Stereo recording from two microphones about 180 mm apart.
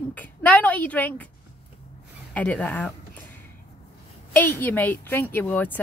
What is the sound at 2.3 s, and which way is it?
Speech, 5° left (ahead or behind).